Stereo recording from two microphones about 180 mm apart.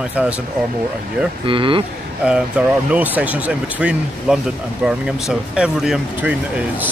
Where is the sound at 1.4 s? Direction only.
30° right (ahead or behind).